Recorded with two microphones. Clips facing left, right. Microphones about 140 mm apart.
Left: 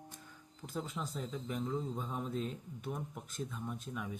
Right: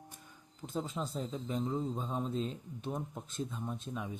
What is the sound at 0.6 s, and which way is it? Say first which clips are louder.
Speech: right 3 dB; 25° right (ahead or behind).